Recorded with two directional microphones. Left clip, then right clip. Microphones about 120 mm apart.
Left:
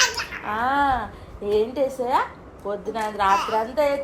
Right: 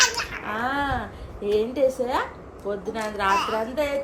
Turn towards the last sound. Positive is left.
turn(degrees=25)  # may be behind; listen again after turning